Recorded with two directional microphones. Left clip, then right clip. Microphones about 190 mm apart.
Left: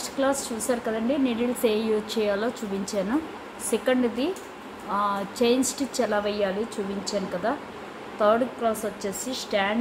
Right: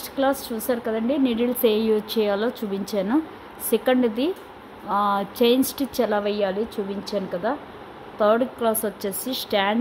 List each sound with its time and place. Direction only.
0.2 s a woman's voice: 40° right (ahead or behind)